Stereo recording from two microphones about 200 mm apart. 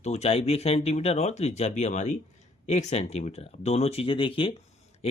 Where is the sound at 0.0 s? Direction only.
35° left (ahead or behind).